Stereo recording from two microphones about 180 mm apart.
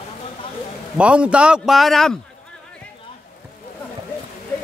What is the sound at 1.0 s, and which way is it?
A man's voice, 5° right (ahead or behind).